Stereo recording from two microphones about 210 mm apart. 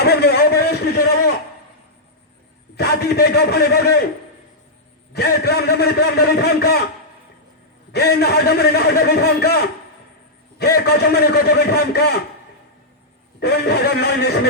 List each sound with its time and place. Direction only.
0.0 s a sound: 50° left (ahead or behind)
2.7 s a man's voice: 50° left (ahead or behind)
5.1 s a man's voice: 50° left (ahead or behind)
7.9 s a man's voice: 50° left (ahead or behind)
10.8 s a man's voice: 50° left (ahead or behind)
13.4 s a man's voice: 50° left (ahead or behind)